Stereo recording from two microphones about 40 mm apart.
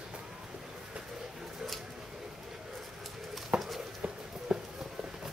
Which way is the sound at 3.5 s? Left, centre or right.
Centre.